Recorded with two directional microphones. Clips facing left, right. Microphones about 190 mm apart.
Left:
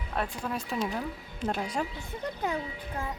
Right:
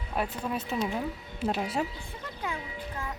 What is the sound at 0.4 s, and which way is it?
Speech, 5° right (ahead or behind).